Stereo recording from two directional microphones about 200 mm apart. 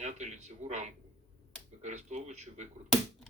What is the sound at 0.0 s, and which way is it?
Speech, 35° right (ahead or behind).